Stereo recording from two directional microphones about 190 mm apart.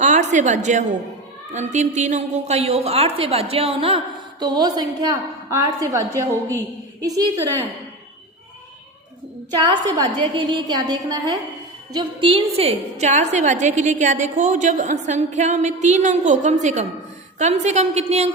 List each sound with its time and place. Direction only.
0.0 s a woman's voice: 40° right (ahead or behind); by 6.2 s 15° right (ahead or behind)
9.5 s a woman's voice: 25° right (ahead or behind)